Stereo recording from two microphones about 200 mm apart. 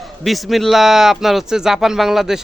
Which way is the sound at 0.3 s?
Centre (ahead or behind).